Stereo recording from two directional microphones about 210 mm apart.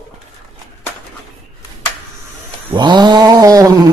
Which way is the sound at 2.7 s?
20° right (ahead or behind).